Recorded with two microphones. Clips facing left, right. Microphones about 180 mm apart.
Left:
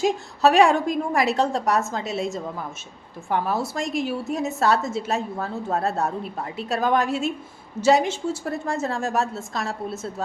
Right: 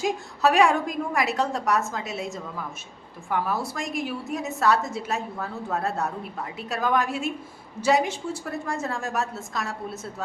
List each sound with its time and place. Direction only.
0.0 s a woman's voice: 25° left (ahead or behind)